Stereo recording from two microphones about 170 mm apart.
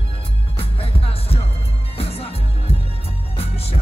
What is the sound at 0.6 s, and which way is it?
Music, 35° left (ahead or behind).